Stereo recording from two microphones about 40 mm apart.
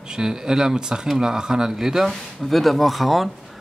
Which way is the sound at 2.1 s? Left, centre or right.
Centre.